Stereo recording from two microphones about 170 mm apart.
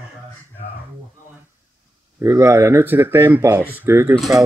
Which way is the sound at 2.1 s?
15° right (ahead or behind).